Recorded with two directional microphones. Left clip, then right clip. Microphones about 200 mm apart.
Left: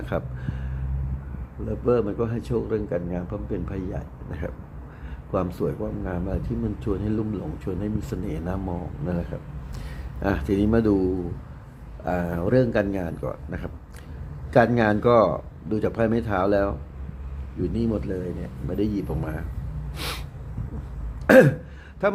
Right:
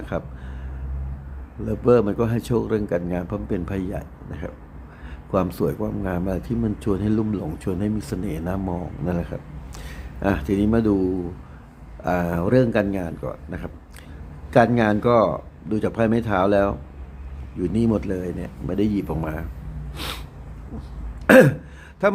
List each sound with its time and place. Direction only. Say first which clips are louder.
0.0 s speech: even; centre (ahead or behind)
1.6 s speech: right 5 dB; 15° right (ahead or behind)
4.3 s speech: left 1 dB; centre (ahead or behind)
5.3 s a man's voice: right 4 dB; 10° right (ahead or behind)
12.0 s speech: right 3 dB; 15° right (ahead or behind)
17.7 s speech: right 5 dB; 15° right (ahead or behind)
21.2 s throat clearing: right 2 dB; 5° right (ahead or behind)
22.0 s speech: right 3 dB; 5° right (ahead or behind)